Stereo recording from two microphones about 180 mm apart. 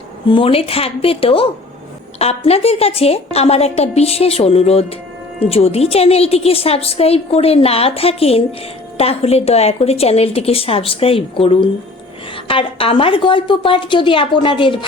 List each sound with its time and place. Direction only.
0.3 s a woman's voice: 30° left (ahead or behind)